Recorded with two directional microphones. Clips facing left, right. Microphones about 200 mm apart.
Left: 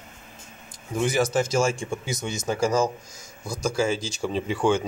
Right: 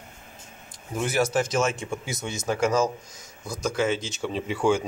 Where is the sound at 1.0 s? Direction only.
5° right (ahead or behind).